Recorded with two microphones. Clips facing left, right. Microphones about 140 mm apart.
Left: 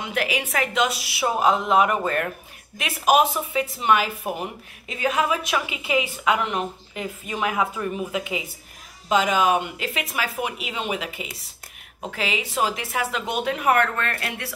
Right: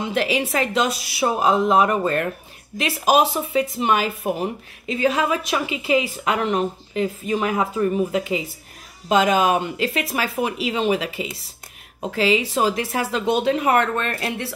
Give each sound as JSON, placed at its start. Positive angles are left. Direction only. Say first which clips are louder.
{"t": 0.0, "sound": "a woman's voice", "louder": "right 5 dB", "side_deg": -30}